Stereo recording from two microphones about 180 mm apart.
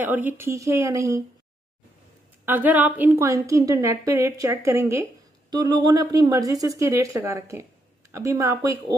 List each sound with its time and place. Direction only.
0.0 s a woman's voice: 10° right (ahead or behind)
2.4 s a woman's voice: 10° right (ahead or behind)